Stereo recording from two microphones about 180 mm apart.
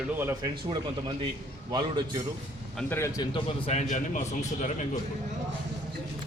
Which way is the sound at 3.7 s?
45° left (ahead or behind).